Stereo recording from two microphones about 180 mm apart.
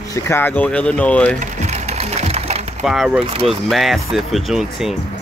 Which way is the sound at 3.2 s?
35° right (ahead or behind).